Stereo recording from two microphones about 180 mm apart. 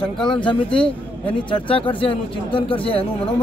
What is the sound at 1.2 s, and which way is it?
Speech, 30° left (ahead or behind).